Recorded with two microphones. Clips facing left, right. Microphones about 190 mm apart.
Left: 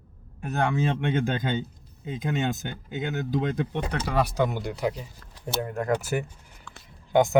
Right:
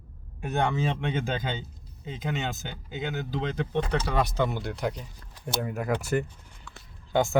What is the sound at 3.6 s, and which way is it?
Speech, 15° left (ahead or behind).